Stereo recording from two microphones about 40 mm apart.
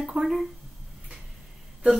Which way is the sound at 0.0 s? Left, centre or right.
Centre.